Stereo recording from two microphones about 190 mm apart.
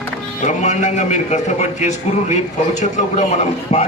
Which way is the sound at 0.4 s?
40° left (ahead or behind).